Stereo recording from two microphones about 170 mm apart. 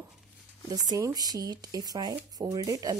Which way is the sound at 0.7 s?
20° right (ahead or behind).